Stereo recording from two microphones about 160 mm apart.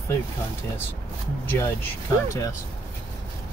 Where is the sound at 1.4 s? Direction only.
15° left (ahead or behind).